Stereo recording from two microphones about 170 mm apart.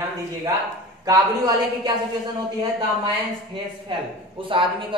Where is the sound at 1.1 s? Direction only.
20° right (ahead or behind).